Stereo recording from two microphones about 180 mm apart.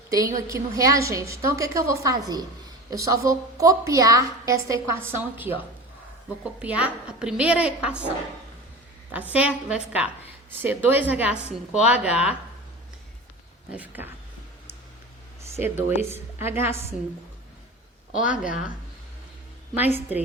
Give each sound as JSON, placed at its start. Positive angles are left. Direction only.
{"t": 0.1, "sound": "a woman's voice", "side_deg": -20}
{"t": 6.6, "sound": "a woman's voice", "side_deg": -10}
{"t": 9.3, "sound": "a woman's voice", "side_deg": -5}
{"t": 13.7, "sound": "a woman's voice", "side_deg": -10}
{"t": 15.5, "sound": "a woman's voice", "side_deg": -15}
{"t": 18.3, "sound": "a woman's voice", "side_deg": -5}
{"t": 19.7, "sound": "a woman's voice", "side_deg": -10}